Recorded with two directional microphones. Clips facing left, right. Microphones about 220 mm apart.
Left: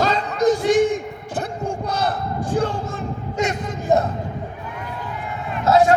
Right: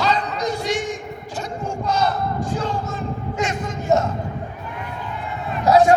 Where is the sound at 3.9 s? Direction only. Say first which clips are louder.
Left 1 dB; 15° left (ahead or behind).